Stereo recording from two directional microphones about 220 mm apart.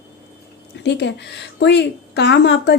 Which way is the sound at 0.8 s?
50° left (ahead or behind).